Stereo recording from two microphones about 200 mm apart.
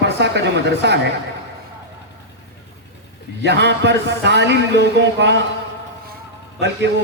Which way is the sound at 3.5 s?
60° right (ahead or behind).